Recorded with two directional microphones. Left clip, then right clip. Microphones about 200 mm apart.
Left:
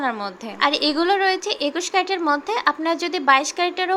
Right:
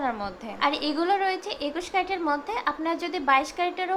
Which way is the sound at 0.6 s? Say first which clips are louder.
Left 6 dB; 25° left (ahead or behind).